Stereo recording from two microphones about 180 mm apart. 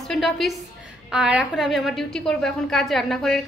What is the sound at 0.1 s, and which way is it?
A woman's voice, centre (ahead or behind).